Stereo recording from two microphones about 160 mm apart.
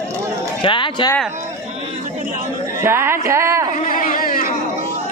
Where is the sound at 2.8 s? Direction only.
15° right (ahead or behind).